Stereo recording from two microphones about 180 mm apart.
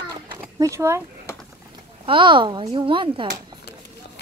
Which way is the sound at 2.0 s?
30° right (ahead or behind).